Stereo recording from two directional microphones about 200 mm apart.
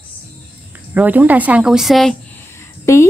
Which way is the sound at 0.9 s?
10° right (ahead or behind).